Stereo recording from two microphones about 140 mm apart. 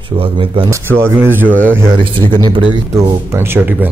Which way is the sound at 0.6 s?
20° right (ahead or behind).